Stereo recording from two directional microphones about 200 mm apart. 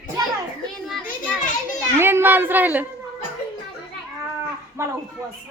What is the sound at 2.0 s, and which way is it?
Speech, 10° right (ahead or behind).